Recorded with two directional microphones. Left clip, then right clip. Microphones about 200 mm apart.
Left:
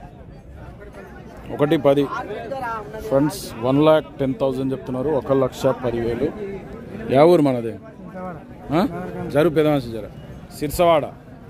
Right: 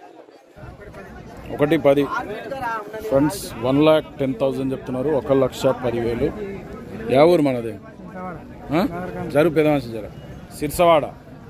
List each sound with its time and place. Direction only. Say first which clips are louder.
1.6 s a man's voice: even; 15° left (ahead or behind)
2.1 s speech: right 1 dB; 55° right (ahead or behind)
3.6 s a man's voice: even; 15° left (ahead or behind)
7.1 s a man's voice: left 1 dB; 25° left (ahead or behind)
8.9 s a man's voice: right 1 dB; 50° left (ahead or behind)
9.3 s a man's voice: even; 15° left (ahead or behind)